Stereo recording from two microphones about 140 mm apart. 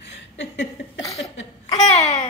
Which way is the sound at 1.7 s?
50° left (ahead or behind).